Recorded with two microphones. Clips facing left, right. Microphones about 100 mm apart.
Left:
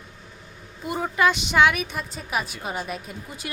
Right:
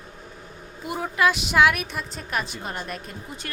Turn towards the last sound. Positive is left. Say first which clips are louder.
# left 1 dB
turn(degrees=5)  # may be behind; listen again after turning